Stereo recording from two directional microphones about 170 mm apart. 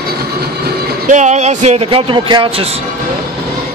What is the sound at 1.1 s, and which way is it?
Speech, 45° right (ahead or behind).